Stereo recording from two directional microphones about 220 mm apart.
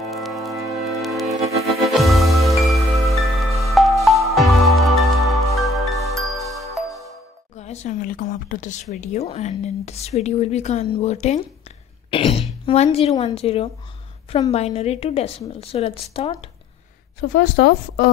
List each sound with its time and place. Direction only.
0.1 s organ: centre (ahead or behind)
0.8 s music: centre (ahead or behind)
7.5 s a sound: 30° left (ahead or behind)
9.0 s speech: 30° left (ahead or behind)
12.1 s throat clearing: 25° left (ahead or behind)
12.6 s speech: 25° left (ahead or behind)
17.2 s a woman's voice: 55° left (ahead or behind)